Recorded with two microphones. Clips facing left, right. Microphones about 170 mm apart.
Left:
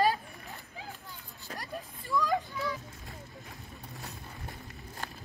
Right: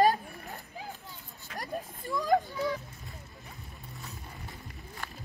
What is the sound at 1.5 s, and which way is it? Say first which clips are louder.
Hubbub: right 2 dB; 35° left (ahead or behind).